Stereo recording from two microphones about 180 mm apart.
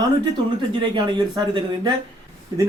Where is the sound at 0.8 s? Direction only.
25° right (ahead or behind).